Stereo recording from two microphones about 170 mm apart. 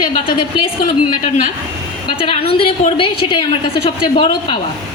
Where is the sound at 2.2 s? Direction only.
35° left (ahead or behind).